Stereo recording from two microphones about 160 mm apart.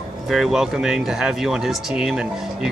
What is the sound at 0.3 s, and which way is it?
Speech, 5° right (ahead or behind).